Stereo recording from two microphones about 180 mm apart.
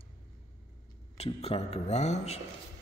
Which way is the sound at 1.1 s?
35° left (ahead or behind).